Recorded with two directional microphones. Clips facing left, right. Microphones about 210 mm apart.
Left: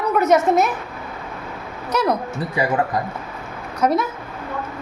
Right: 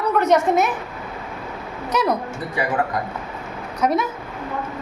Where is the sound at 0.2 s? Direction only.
5° left (ahead or behind).